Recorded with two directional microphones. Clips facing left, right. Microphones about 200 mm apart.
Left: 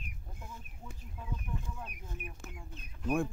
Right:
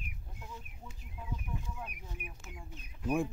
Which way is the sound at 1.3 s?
10° right (ahead or behind).